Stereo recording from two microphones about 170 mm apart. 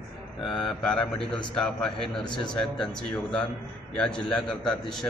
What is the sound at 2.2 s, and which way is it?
Speech, 25° left (ahead or behind).